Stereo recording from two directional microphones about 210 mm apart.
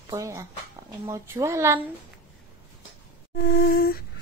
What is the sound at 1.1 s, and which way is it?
Speech, 15° right (ahead or behind).